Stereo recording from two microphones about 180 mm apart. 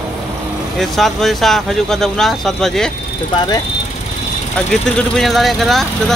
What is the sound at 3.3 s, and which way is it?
Speech, 25° left (ahead or behind).